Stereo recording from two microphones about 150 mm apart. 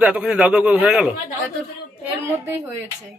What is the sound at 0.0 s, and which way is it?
Speech, 10° right (ahead or behind).